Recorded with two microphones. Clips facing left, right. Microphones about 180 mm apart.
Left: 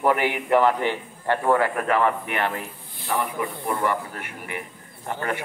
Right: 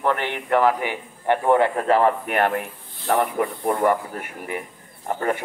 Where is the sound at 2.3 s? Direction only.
50° right (ahead or behind).